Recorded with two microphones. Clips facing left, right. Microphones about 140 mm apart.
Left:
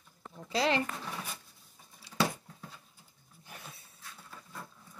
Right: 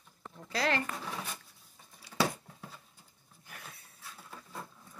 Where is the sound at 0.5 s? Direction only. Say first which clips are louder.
Left 2 dB; 20° left (ahead or behind).